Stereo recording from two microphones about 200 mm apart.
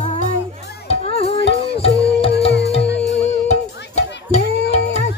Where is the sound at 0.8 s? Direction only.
30° left (ahead or behind).